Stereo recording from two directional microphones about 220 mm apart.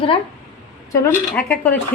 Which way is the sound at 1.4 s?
5° left (ahead or behind).